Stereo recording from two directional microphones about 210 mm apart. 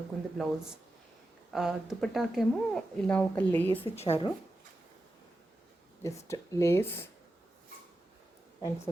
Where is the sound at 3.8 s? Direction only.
30° left (ahead or behind).